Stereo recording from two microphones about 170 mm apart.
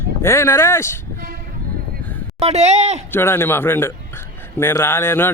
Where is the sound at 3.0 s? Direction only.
15° left (ahead or behind).